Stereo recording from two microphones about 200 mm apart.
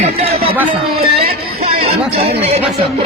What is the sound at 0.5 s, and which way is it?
Speech, 10° right (ahead or behind).